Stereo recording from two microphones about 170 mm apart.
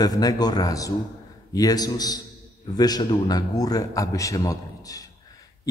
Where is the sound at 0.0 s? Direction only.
20° left (ahead or behind).